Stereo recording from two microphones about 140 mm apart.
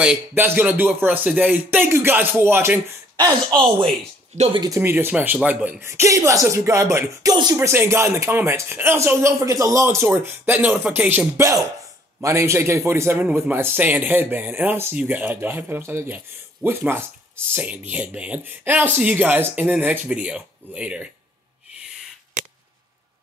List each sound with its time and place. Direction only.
0.0 s speech: 10° right (ahead or behind)
3.4 s speech: 30° right (ahead or behind)
4.6 s speech: 20° right (ahead or behind)